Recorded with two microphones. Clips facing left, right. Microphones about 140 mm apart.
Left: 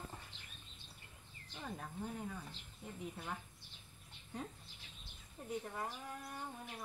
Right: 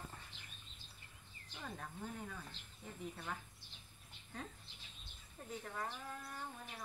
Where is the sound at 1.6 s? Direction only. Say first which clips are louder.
Left 2 dB; 10° left (ahead or behind).